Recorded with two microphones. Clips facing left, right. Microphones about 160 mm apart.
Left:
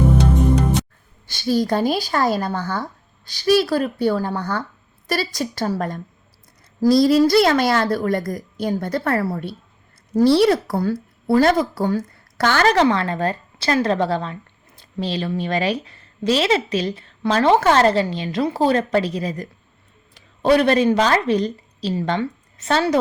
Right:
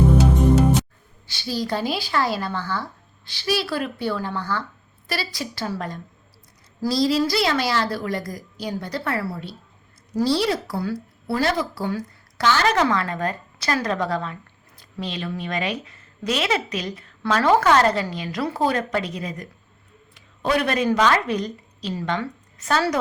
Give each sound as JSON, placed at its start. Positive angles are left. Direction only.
{"t": 0.2, "sound": "music", "side_deg": -5}
{"t": 1.3, "sound": "speech", "side_deg": 50}
{"t": 12.6, "sound": "a woman's voice", "side_deg": 30}